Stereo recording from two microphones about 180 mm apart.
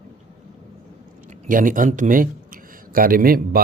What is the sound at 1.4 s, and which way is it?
A man's voice, 50° right (ahead or behind).